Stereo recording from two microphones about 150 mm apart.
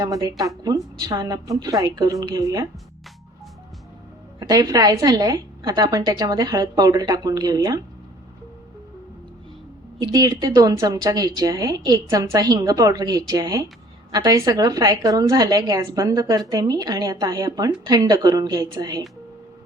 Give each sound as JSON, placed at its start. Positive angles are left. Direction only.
{"t": 0.0, "sound": "a woman's voice", "side_deg": -25}
{"t": 4.4, "sound": "a woman's voice", "side_deg": -25}
{"t": 10.0, "sound": "a woman's voice", "side_deg": -25}